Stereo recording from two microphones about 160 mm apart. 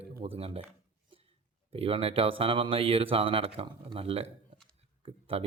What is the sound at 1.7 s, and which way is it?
Speech, 35° right (ahead or behind).